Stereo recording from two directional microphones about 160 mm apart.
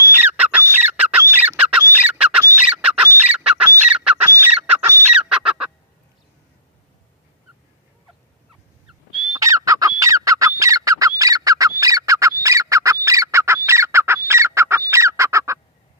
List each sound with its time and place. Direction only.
0.0 s bird: 15° right (ahead or behind)
3.1 s fowl: 15° right (ahead or behind)
3.9 s squawk: 5° right (ahead or behind)
5.1 s goose: 5° right (ahead or behind)
9.4 s fowl: 20° right (ahead or behind)
11.8 s bird: 20° right (ahead or behind)
13.7 s fowl: 15° right (ahead or behind)